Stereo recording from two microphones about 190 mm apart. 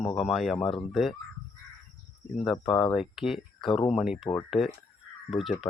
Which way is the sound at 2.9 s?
Centre (ahead or behind).